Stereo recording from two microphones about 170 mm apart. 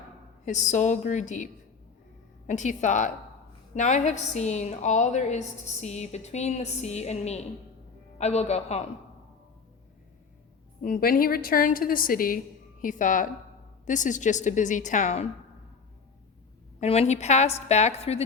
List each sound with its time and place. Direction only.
0.4 s a woman's voice: 45° left (ahead or behind)
2.5 s a woman's voice: 45° left (ahead or behind)
10.8 s a woman's voice: 55° left (ahead or behind)
16.8 s a woman's voice: 40° left (ahead or behind)